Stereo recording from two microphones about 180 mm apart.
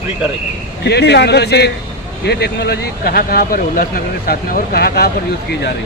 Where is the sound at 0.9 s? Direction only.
70° left (ahead or behind).